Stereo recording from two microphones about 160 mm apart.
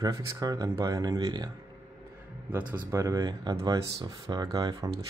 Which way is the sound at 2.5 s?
10° right (ahead or behind).